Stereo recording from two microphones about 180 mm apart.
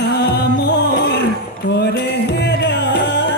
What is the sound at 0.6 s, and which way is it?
Music, 70° left (ahead or behind).